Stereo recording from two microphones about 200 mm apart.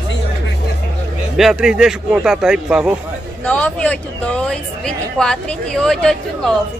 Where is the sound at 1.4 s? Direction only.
5° right (ahead or behind).